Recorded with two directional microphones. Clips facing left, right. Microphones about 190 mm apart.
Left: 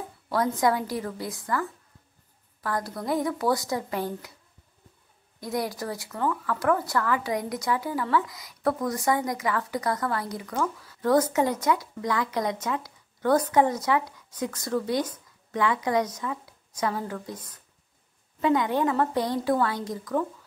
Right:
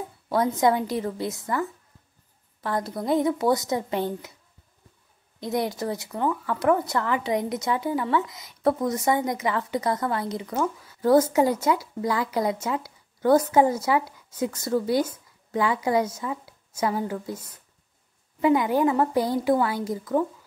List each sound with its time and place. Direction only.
0.3 s a woman's voice: 20° right (ahead or behind)
5.4 s a woman's voice: 25° right (ahead or behind)